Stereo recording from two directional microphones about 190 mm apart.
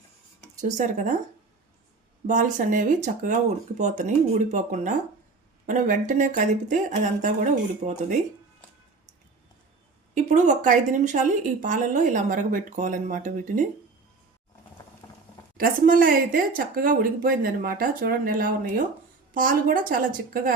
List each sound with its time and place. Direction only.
0.6 s a woman's voice: 40° right (ahead or behind)
2.2 s a woman's voice: 40° right (ahead or behind)
10.2 s a woman's voice: 40° right (ahead or behind)
15.0 s a sound: 20° left (ahead or behind)
15.5 s speech: 50° right (ahead or behind)